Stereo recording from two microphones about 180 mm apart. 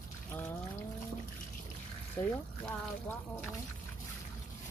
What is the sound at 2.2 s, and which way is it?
Speech, 10° left (ahead or behind).